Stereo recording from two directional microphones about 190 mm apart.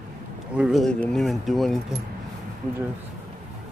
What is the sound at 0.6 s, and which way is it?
Speech, centre (ahead or behind).